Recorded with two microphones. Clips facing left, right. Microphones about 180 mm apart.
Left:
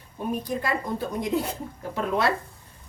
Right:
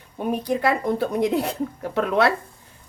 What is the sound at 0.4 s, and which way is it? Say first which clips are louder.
Speech: right 7 dB; 70° right (ahead or behind).